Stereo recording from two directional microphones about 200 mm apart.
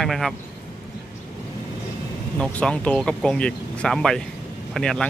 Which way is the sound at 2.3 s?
5° left (ahead or behind).